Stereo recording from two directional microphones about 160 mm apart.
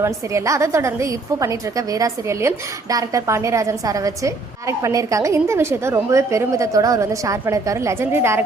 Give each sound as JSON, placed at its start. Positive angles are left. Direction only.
{"t": 0.0, "sound": "a woman's voice", "side_deg": -20}